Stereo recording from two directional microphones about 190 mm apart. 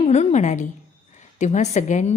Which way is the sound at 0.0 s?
35° left (ahead or behind).